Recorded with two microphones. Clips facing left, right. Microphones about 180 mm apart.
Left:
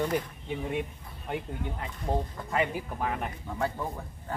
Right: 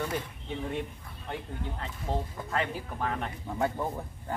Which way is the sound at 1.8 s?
10° left (ahead or behind).